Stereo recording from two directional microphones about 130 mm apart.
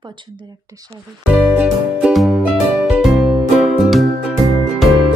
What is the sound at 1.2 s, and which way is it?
Music, 10° right (ahead or behind).